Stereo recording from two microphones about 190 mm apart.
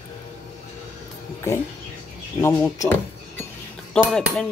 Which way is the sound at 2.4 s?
15° left (ahead or behind).